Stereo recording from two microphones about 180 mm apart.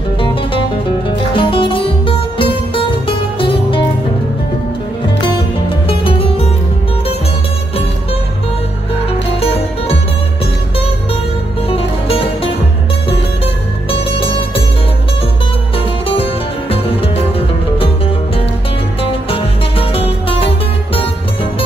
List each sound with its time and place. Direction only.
0.2 s music: 30° left (ahead or behind)
5.9 s music: 30° left (ahead or behind)
9.4 s music: 30° left (ahead or behind)
11.7 s music: 35° left (ahead or behind)
13.8 s music: 30° left (ahead or behind)
16.1 s music: 30° left (ahead or behind)
19.3 s music: 30° left (ahead or behind)